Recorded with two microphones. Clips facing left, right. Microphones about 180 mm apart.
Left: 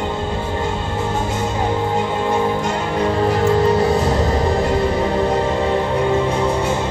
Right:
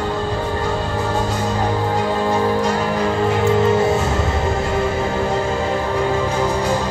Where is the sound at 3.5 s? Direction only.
35° left (ahead or behind).